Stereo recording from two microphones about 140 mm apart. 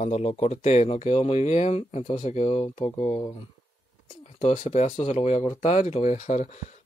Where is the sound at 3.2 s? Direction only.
30° left (ahead or behind).